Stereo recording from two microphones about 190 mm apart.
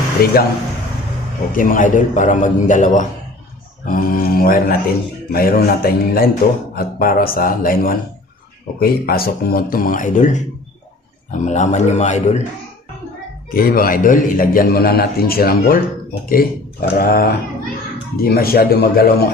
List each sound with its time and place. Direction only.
0.2 s speech: 55° left (ahead or behind)
1.5 s a man's voice: 45° left (ahead or behind)
13.5 s speech: 50° left (ahead or behind)
16.9 s speech: 50° left (ahead or behind)